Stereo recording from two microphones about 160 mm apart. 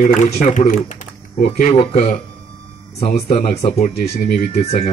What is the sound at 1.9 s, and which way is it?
Speech, 55° left (ahead or behind).